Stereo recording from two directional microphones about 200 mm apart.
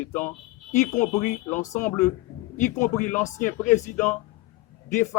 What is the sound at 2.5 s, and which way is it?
Speech, 40° left (ahead or behind).